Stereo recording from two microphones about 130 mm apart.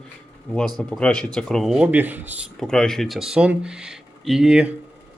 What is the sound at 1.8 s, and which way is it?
Speech, 15° right (ahead or behind).